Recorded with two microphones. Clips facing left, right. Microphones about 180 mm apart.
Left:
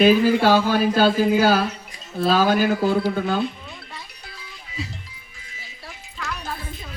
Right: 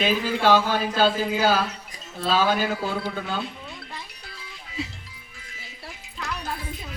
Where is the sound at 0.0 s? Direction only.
45° left (ahead or behind).